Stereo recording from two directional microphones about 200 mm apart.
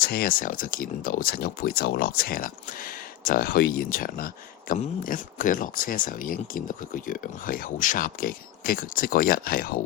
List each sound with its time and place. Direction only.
0.0 s speech: 50° left (ahead or behind)